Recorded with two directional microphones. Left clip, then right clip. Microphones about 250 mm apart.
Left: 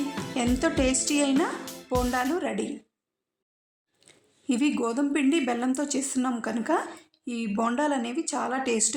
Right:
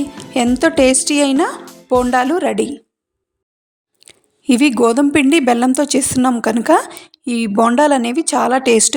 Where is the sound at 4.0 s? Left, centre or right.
Right.